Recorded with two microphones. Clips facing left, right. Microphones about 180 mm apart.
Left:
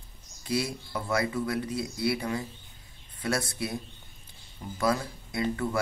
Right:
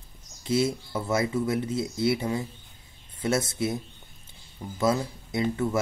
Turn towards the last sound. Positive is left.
turn(degrees=-20)  # may be behind; listen again after turning